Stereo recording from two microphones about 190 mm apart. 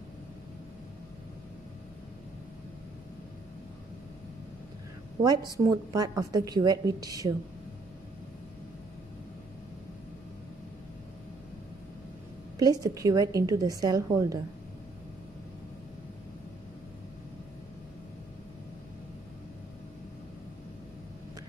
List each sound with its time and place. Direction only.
5.2 s a woman's voice: 20° right (ahead or behind)
12.5 s a woman's voice: 20° right (ahead or behind)